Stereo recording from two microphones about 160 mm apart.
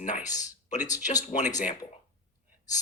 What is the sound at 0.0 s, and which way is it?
Speech, 50° left (ahead or behind).